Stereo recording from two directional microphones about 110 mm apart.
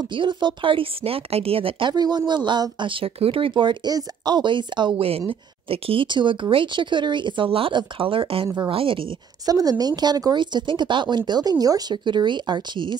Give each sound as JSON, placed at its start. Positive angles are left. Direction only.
{"t": 0.1, "sound": "a woman's voice", "side_deg": -45}
{"t": 5.3, "sound": "a woman's voice", "side_deg": -55}
{"t": 9.5, "sound": "speech", "side_deg": -35}